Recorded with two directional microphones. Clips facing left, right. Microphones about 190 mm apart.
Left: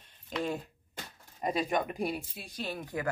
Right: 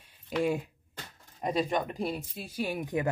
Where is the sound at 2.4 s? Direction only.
10° right (ahead or behind).